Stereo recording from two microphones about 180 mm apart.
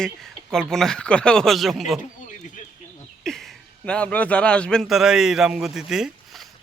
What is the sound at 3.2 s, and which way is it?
A man's voice, centre (ahead or behind).